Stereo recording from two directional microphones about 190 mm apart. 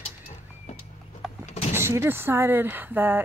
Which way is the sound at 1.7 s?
15° right (ahead or behind).